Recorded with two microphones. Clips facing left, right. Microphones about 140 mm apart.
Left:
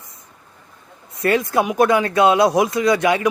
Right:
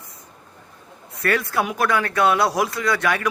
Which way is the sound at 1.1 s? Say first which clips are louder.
Left 4 dB; 20° left (ahead or behind).